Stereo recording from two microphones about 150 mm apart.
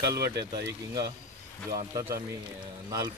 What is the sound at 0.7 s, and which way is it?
Speech, 25° right (ahead or behind).